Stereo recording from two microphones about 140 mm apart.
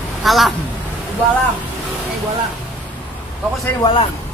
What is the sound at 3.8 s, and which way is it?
Speech, 30° left (ahead or behind).